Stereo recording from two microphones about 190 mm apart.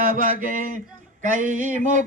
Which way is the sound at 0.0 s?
45° right (ahead or behind).